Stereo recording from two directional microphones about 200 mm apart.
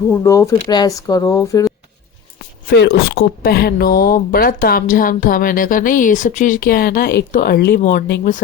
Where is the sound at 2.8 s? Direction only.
55° left (ahead or behind).